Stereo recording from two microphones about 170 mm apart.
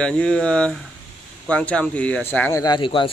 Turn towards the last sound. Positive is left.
turn(degrees=30)  # may be behind; listen again after turning